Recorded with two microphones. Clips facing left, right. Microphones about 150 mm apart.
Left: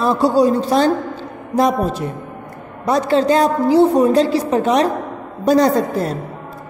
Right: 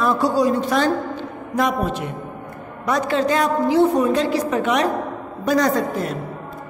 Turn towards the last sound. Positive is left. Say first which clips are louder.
# left 4 dB
turn(degrees=35)  # may be behind; listen again after turning